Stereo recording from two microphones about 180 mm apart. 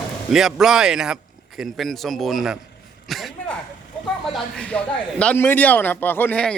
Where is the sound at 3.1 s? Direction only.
Centre (ahead or behind).